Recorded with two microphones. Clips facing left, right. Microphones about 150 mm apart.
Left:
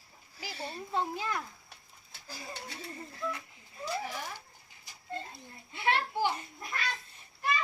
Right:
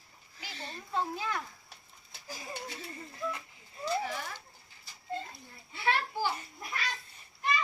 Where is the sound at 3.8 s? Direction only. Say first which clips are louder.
Right 3 dB; 10° left (ahead or behind).